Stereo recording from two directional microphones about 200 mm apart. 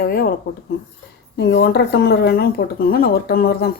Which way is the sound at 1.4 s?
50° left (ahead or behind).